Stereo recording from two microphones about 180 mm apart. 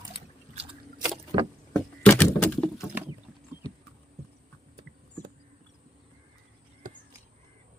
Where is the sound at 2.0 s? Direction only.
15° left (ahead or behind).